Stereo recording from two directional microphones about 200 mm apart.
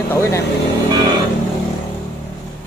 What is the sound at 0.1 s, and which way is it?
Speech, 15° left (ahead or behind).